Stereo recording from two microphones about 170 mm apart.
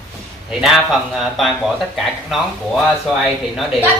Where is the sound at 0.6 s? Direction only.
Centre (ahead or behind).